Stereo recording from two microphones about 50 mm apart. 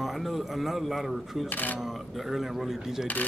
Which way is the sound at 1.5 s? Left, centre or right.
Left.